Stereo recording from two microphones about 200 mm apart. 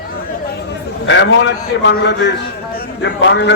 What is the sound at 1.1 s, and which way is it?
A man's voice, 65° left (ahead or behind).